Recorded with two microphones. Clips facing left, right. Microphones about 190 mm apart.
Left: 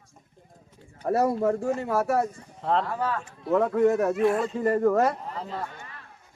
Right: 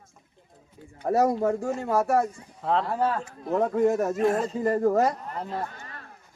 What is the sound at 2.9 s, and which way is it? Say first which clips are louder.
Speech: right 3 dB; 30° right (ahead or behind).